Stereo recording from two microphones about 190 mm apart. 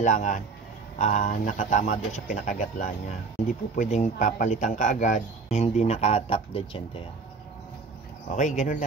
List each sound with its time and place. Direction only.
0.0 s speech: 40° left (ahead or behind)
8.3 s speech: 40° left (ahead or behind)